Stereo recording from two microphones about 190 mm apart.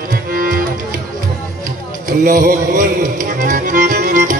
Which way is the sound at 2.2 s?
45° right (ahead or behind).